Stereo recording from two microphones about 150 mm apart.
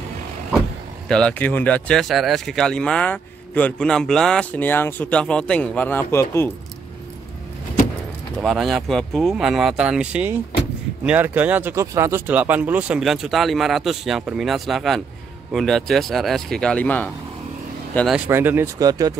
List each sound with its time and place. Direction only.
1.0 s speech: 5° left (ahead or behind)
8.4 s speech: centre (ahead or behind)
18.1 s speech: 10° right (ahead or behind)